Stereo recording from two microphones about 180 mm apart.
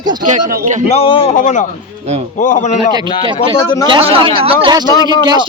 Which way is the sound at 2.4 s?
45° left (ahead or behind).